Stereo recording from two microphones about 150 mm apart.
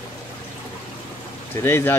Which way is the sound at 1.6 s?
15° left (ahead or behind).